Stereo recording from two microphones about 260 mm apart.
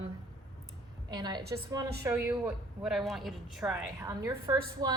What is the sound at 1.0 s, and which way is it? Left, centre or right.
A woman's voice, centre.